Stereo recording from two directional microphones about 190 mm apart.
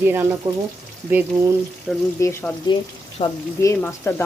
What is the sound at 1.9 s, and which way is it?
Speech, centre (ahead or behind).